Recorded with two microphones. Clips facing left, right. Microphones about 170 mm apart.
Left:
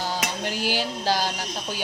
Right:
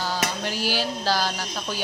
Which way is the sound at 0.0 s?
20° left (ahead or behind).